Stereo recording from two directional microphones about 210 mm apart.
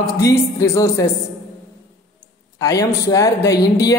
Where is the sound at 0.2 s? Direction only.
15° left (ahead or behind).